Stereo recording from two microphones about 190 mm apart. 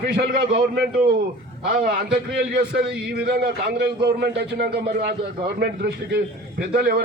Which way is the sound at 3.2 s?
55° right (ahead or behind).